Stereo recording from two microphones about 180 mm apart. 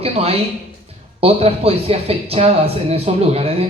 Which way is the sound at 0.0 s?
35° right (ahead or behind).